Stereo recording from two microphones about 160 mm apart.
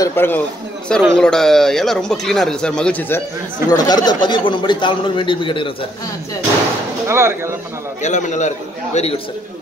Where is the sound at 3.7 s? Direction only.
25° left (ahead or behind).